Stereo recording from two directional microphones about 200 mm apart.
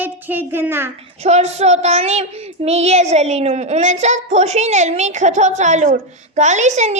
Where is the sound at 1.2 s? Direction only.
35° right (ahead or behind).